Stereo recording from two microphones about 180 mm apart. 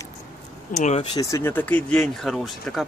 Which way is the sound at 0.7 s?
40° left (ahead or behind).